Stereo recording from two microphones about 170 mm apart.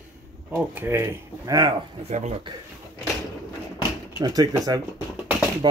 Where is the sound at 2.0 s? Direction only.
40° right (ahead or behind).